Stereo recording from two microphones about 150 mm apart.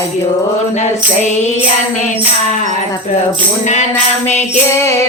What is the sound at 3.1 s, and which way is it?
Speech, 55° left (ahead or behind).